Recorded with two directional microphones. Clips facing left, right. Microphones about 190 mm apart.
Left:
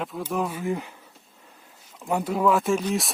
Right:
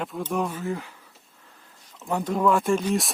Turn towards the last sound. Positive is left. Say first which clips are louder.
# right 1 dB
turn(degrees=0)  # may be behind; listen again after turning